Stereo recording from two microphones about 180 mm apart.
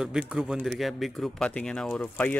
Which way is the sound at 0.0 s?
5° right (ahead or behind).